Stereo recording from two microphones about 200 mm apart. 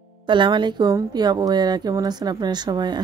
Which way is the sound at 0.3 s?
25° right (ahead or behind).